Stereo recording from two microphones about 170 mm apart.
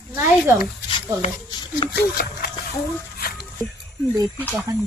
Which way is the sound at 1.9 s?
70° left (ahead or behind).